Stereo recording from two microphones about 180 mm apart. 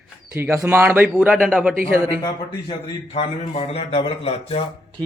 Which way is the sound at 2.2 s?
30° left (ahead or behind).